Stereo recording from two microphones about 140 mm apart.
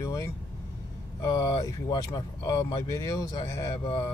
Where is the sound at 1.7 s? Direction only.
25° left (ahead or behind).